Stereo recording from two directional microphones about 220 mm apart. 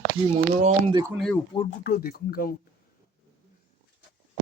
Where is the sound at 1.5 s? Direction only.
25° left (ahead or behind).